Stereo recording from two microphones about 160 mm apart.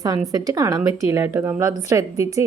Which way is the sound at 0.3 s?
25° right (ahead or behind).